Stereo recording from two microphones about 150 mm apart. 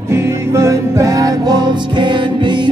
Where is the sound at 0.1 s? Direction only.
20° right (ahead or behind).